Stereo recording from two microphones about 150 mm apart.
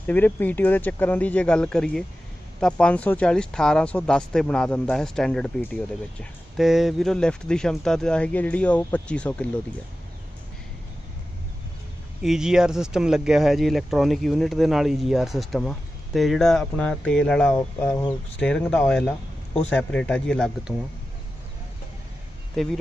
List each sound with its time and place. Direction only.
0.0 s speech: 10° left (ahead or behind)
12.2 s speech: 5° right (ahead or behind)
17.6 s speech: 15° left (ahead or behind)
22.6 s speech: centre (ahead or behind)